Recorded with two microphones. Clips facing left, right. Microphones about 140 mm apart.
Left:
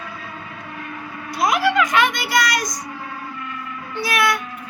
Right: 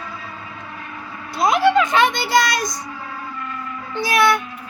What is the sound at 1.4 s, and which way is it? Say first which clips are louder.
A child's voice: right 3 dB; 25° right (ahead or behind).